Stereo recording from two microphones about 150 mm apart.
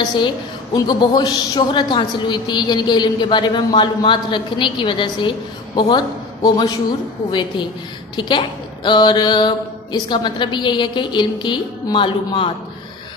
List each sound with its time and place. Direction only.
0.8 s a woman's voice: 25° left (ahead or behind)